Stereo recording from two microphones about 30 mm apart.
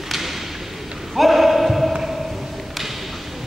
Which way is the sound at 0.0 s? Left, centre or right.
Centre.